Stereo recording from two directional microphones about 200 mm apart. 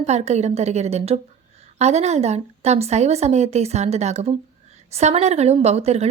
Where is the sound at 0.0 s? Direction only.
35° right (ahead or behind).